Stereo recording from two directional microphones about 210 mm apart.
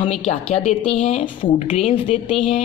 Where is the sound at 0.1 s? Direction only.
30° left (ahead or behind).